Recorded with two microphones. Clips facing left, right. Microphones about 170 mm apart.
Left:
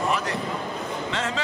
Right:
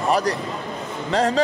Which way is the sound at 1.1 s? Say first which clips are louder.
Right 12 dB; 40° right (ahead or behind).